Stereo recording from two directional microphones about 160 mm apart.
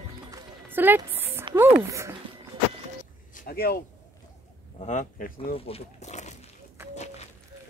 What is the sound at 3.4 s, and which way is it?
Speech, 70° left (ahead or behind).